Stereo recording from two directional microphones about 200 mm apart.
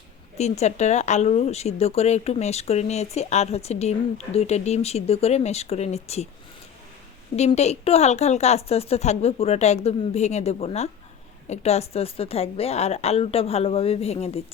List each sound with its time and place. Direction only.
0.3 s speech: 35° left (ahead or behind)
7.3 s speech: 35° left (ahead or behind)